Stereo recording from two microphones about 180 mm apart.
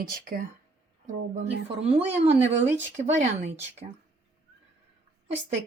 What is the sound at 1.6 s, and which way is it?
Speech, 35° right (ahead or behind).